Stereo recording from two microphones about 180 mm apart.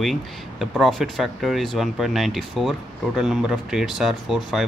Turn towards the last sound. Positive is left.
turn(degrees=0)  # may be behind; listen again after turning